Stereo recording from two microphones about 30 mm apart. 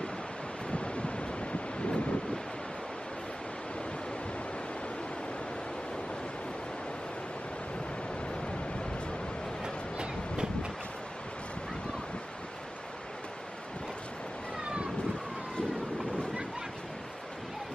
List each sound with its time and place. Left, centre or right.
0.7 s waves: left
1.8 s wind noise: left
9.9 s train: right
14.6 s vehicle: right